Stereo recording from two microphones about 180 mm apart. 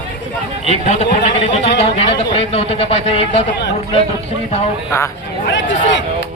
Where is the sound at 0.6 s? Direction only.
40° left (ahead or behind).